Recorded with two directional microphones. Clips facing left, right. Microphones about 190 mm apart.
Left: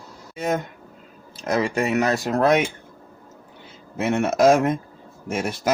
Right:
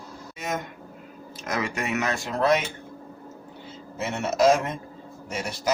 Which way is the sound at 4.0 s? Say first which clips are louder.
Left 4 dB; 60° left (ahead or behind).